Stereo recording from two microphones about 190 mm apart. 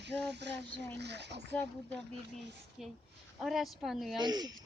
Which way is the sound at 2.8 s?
Centre (ahead or behind).